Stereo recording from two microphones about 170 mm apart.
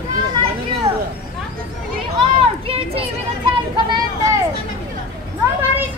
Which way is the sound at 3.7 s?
25° right (ahead or behind).